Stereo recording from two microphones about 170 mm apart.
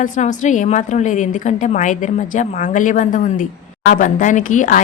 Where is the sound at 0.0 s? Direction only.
45° left (ahead or behind).